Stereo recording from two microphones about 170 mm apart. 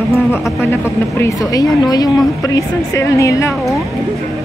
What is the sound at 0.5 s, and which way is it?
A woman's voice, 15° left (ahead or behind).